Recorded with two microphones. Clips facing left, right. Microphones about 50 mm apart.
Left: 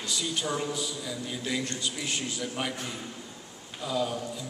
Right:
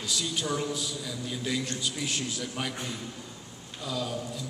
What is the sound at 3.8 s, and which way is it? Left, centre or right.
Speech, centre.